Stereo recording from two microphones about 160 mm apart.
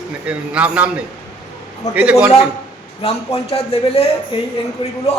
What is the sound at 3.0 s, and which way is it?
A man's voice, 40° left (ahead or behind).